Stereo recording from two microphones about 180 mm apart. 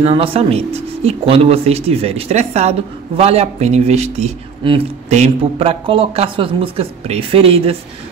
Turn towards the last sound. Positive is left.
turn(degrees=-30)  # may be behind; listen again after turning